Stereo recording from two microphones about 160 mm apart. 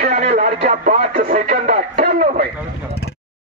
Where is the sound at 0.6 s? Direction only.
60° right (ahead or behind).